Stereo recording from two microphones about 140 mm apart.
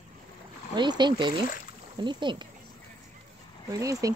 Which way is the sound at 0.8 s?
30° right (ahead or behind).